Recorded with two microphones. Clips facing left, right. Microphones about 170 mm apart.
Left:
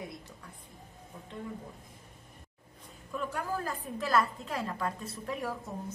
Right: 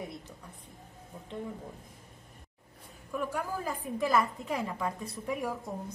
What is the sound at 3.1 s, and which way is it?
A woman's voice, 10° right (ahead or behind).